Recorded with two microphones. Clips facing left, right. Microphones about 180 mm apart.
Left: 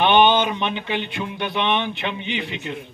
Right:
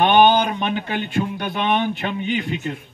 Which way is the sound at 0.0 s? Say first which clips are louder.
Right 2 dB; 45° right (ahead or behind).